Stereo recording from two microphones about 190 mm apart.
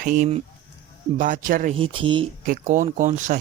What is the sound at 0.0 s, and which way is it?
Speech, 45° right (ahead or behind).